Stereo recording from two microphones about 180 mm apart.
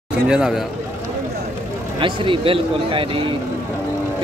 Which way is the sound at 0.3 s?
Centre (ahead or behind).